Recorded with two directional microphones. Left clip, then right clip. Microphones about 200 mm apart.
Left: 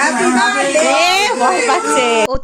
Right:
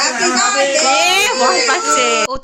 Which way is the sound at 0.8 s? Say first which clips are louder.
Even; 5° right (ahead or behind).